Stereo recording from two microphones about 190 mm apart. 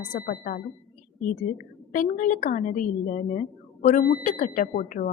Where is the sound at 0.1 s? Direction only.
45° left (ahead or behind).